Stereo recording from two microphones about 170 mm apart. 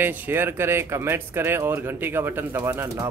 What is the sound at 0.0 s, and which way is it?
Speech, 10° right (ahead or behind).